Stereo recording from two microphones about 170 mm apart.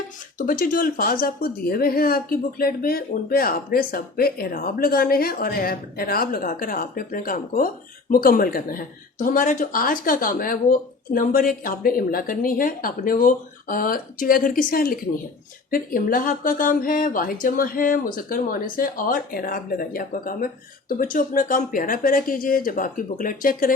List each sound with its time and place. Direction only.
0.3 s speech: 55° left (ahead or behind)